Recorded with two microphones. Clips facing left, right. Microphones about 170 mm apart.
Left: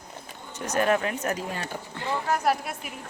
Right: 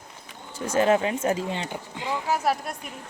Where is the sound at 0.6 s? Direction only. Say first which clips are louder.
Right 3 dB; 25° right (ahead or behind); by 2.7 s centre (ahead or behind).